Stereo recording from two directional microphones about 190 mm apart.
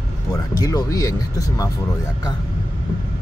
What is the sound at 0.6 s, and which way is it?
Speech, 20° left (ahead or behind).